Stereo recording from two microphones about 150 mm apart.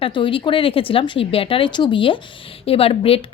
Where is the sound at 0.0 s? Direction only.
35° left (ahead or behind).